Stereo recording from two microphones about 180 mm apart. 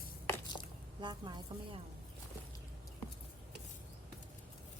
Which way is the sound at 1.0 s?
25° right (ahead or behind).